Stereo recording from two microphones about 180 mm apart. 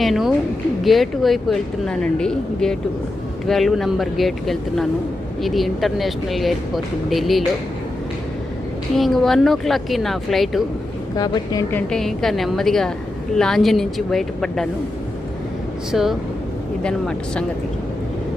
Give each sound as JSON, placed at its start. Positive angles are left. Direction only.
{"t": 0.0, "sound": "a sound", "side_deg": 0}
{"t": 0.9, "sound": "speech", "side_deg": 0}
{"t": 9.0, "sound": "speech", "side_deg": 0}
{"t": 11.2, "sound": "speech", "side_deg": 20}
{"t": 11.9, "sound": "speech", "side_deg": 0}
{"t": 15.9, "sound": "speech", "side_deg": 0}